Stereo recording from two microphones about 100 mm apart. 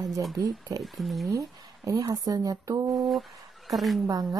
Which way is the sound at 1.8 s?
35° right (ahead or behind).